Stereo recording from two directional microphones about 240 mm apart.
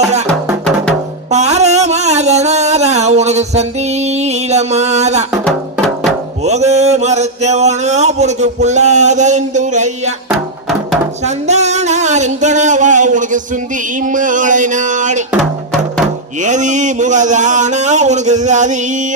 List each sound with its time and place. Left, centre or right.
1.3 s a sound: right
4.2 s music: right
5.5 s music: centre
6.4 s mantra: right
11.4 s mantra: right
14.1 s a man's voice: right
15.3 s music: centre
16.4 s a man's voice: right